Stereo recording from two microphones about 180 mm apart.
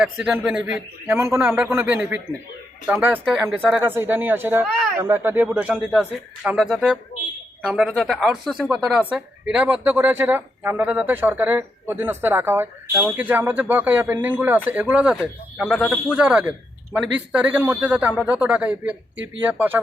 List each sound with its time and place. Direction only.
0.0 s speech: 10° right (ahead or behind)
19.1 s speech: 90° right
19.5 s speech: 10° right (ahead or behind)